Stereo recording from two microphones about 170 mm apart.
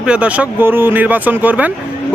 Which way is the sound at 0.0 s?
5° right (ahead or behind).